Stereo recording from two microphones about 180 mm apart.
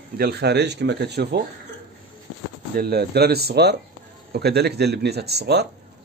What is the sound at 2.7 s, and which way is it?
Speech, 60° right (ahead or behind).